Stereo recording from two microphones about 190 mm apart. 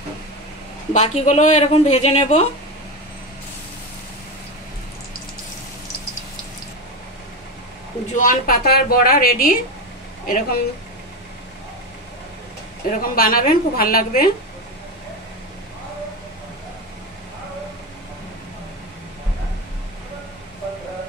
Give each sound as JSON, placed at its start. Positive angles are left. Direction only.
{"t": 0.9, "sound": "speech", "side_deg": 35}
{"t": 8.1, "sound": "a woman's voice", "side_deg": 45}
{"t": 13.0, "sound": "a woman's voice", "side_deg": 50}